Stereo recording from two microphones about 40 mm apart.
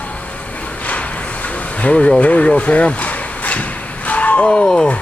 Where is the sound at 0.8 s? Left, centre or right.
Left.